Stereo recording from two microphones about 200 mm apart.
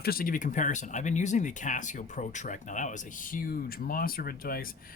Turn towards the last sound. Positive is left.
turn(degrees=45)  # may be behind; listen again after turning